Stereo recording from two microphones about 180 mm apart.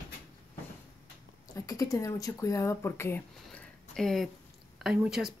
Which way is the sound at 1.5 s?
20° left (ahead or behind).